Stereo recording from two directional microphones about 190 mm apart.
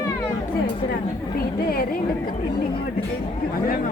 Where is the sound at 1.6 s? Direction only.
50° left (ahead or behind).